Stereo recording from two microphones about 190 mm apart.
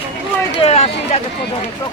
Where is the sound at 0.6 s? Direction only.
30° left (ahead or behind).